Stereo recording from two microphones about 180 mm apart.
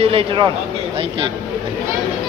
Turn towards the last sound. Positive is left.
turn(degrees=-35)  # may be behind; listen again after turning